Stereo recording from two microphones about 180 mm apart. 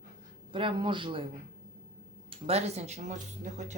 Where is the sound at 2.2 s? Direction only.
35° right (ahead or behind).